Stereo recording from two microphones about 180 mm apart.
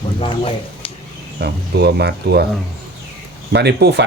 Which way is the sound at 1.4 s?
65° right (ahead or behind).